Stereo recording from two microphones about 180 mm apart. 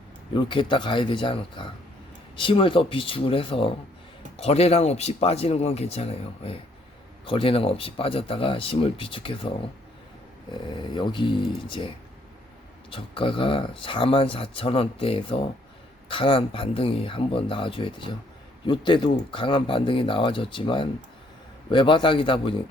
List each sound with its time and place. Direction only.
0.3 s speech: 25° left (ahead or behind)
10.5 s speech: 25° left (ahead or behind)
12.9 s speech: 30° left (ahead or behind)